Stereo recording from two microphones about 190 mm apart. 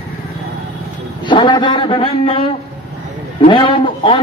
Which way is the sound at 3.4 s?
25° left (ahead or behind).